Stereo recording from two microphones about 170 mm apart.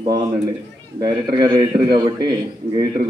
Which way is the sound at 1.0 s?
25° right (ahead or behind).